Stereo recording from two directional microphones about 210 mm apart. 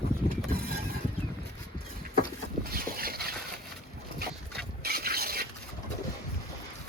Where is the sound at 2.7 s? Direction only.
45° right (ahead or behind).